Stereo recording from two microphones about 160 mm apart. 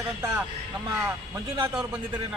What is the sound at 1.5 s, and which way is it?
Speech, 15° right (ahead or behind).